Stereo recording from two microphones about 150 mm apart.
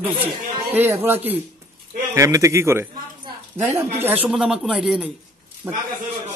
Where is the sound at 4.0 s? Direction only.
15° right (ahead or behind).